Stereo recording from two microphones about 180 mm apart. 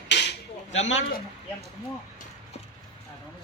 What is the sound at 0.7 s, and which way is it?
Speech, 90° left.